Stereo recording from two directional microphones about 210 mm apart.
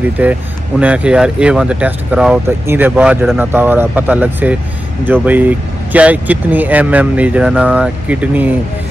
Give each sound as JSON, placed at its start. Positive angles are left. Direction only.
{"t": 0.2, "sound": "speech", "side_deg": -5}